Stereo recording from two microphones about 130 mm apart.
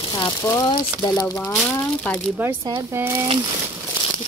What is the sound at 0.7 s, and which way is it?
Speech, 35° left (ahead or behind).